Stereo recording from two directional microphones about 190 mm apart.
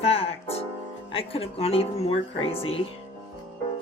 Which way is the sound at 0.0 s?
30° left (ahead or behind).